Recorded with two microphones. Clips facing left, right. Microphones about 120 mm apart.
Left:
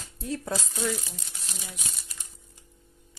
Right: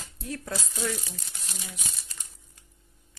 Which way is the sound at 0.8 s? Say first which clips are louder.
Left 2 dB; 10° left (ahead or behind).